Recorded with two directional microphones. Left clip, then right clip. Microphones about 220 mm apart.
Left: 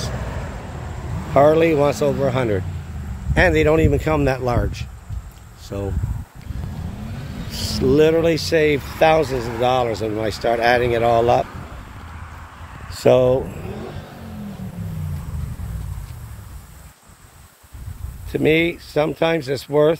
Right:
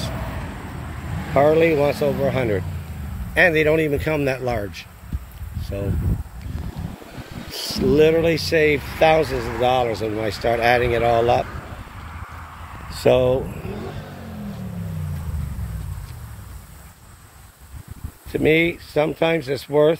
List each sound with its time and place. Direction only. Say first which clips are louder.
1.3 s speech: left 2 dB; 15° left (ahead or behind)
7.5 s speech: left 1 dB; 20° left (ahead or behind)
13.0 s speech: left 2 dB; 15° left (ahead or behind)
18.3 s speech: even; 10° left (ahead or behind)